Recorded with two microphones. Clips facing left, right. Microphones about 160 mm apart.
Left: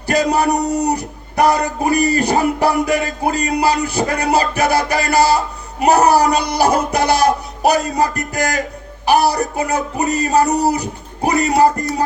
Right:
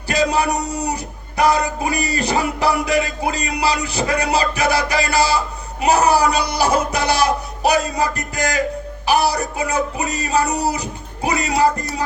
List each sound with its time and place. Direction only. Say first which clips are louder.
0.1 s speech: left 3 dB; 55° left (ahead or behind)
1.9 s music: left 9 dB; 55° left (ahead or behind)
3.5 s speech: left 4 dB; 55° left (ahead or behind)
10.1 s music: left 8 dB; 55° left (ahead or behind)